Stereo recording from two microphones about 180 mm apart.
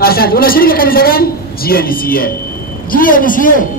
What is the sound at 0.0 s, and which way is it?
A man's voice, 55° left (ahead or behind).